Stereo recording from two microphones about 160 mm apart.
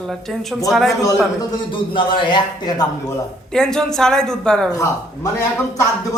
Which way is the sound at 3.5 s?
5° left (ahead or behind).